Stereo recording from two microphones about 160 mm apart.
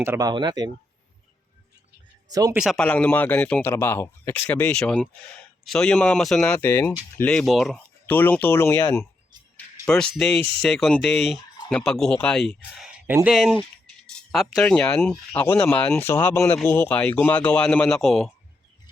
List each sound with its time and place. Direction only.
0.0 s speech: 15° right (ahead or behind)
0.3 s speech: 25° right (ahead or behind)
2.3 s speech: 25° right (ahead or behind)
2.6 s speech: 5° right (ahead or behind)
2.8 s speech: 10° left (ahead or behind)
8.0 s speech: 10° left (ahead or behind)